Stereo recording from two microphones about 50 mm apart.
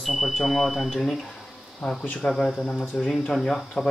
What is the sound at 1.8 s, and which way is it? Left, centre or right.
Speech, centre.